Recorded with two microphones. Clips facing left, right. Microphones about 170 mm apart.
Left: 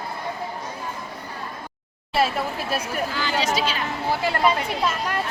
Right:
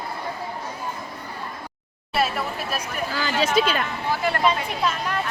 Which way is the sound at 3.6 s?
55° right (ahead or behind).